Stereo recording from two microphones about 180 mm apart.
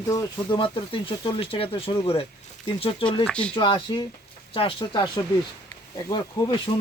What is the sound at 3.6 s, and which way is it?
Speech, 25° left (ahead or behind).